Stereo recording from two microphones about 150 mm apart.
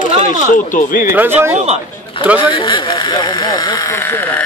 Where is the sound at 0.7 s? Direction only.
65° left (ahead or behind).